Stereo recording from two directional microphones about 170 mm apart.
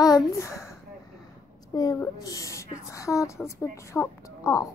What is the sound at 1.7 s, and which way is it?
A woman's voice, 20° left (ahead or behind).